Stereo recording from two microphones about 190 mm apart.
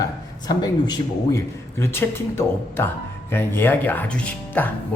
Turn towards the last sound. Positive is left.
turn(degrees=10)  # may be behind; listen again after turning